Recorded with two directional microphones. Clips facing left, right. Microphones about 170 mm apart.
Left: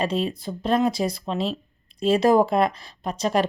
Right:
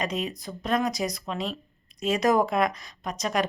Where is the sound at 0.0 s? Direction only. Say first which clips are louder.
Left 5 dB; 30° left (ahead or behind).